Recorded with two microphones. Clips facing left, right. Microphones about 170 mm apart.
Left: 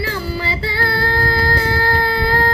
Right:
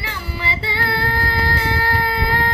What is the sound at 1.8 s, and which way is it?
Baby cry, 35° left (ahead or behind).